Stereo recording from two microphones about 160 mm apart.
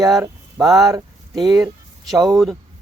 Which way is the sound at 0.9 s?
20° right (ahead or behind).